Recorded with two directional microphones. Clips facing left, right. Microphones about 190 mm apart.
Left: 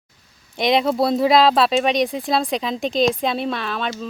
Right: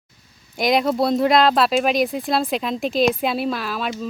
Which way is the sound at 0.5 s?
Centre (ahead or behind).